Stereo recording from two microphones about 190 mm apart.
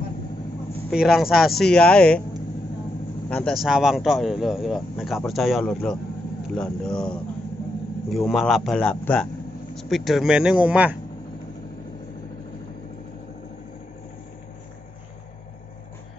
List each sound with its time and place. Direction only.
0.8 s speech: centre (ahead or behind)
3.3 s speech: 5° left (ahead or behind)